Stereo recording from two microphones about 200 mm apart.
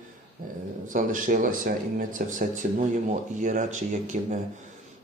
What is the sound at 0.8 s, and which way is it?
Speech, 40° right (ahead or behind).